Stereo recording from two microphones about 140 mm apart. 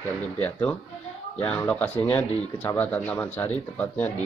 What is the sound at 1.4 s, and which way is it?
Speech, 10° left (ahead or behind).